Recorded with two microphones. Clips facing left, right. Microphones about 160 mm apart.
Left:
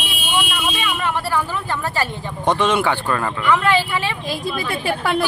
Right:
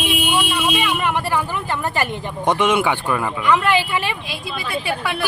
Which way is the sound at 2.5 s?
15° right (ahead or behind).